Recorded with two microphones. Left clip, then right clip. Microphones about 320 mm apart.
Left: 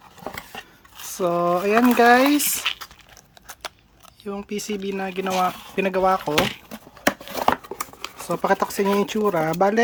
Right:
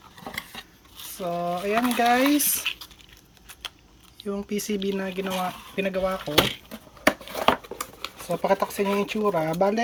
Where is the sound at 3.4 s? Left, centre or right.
Centre.